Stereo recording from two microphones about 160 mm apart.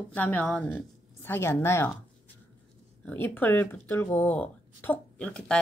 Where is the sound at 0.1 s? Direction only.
10° left (ahead or behind).